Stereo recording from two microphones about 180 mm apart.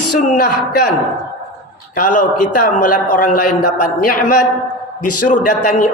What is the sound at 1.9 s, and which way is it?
A man's voice, 50° left (ahead or behind).